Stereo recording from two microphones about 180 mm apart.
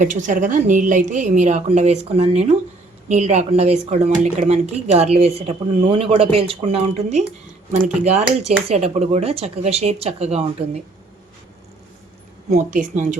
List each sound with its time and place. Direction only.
0.0 s a woman's voice: 45° right (ahead or behind)
12.5 s a woman's voice: 45° right (ahead or behind)